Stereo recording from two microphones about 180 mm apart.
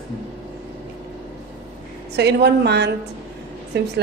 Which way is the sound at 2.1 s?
70° right (ahead or behind).